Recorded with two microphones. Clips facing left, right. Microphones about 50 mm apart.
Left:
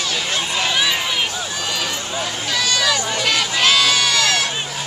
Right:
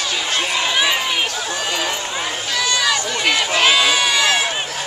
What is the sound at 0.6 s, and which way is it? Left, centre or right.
Run, centre.